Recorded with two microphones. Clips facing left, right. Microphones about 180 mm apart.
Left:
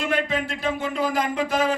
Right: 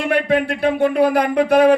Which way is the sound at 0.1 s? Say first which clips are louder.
Right 7 dB; 60° right (ahead or behind).